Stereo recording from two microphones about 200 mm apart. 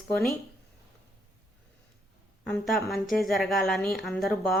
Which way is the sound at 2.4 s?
5° left (ahead or behind).